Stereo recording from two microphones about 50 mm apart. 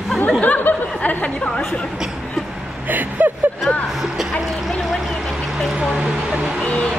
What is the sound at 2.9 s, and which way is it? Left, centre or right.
Speech, right.